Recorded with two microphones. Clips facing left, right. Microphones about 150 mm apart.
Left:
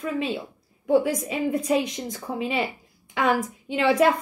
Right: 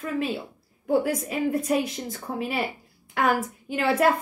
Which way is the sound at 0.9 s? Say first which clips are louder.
Left 2 dB; centre (ahead or behind).